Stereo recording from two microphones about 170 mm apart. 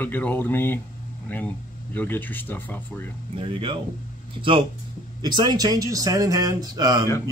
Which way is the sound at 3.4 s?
30° right (ahead or behind).